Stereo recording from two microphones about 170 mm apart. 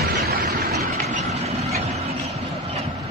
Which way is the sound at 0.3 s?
65° right (ahead or behind).